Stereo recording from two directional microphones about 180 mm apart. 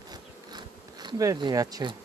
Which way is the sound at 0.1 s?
25° right (ahead or behind).